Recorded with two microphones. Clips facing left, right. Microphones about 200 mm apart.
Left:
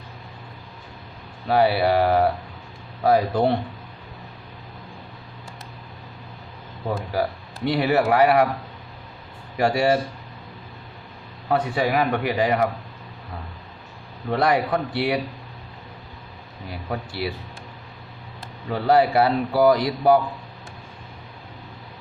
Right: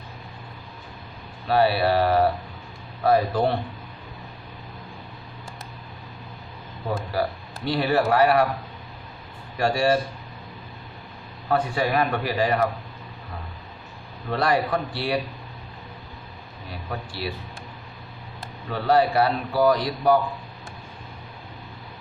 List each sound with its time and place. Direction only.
1.5 s speech: 20° left (ahead or behind)
7.1 s speech: 20° left (ahead or behind)
9.6 s speech: 20° left (ahead or behind)
11.5 s speech: 20° left (ahead or behind)
14.3 s speech: 20° left (ahead or behind)
18.7 s speech: 25° left (ahead or behind)